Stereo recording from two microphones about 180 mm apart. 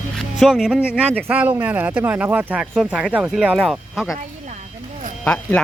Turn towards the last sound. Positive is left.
turn(degrees=10)  # may be behind; listen again after turning